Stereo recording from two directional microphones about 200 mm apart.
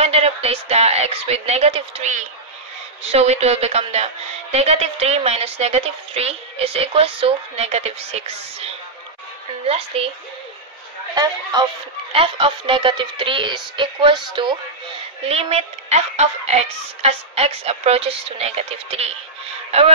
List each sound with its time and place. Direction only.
0.0 s a woman's voice: 30° right (ahead or behind)
12.1 s a woman's voice: 25° right (ahead or behind)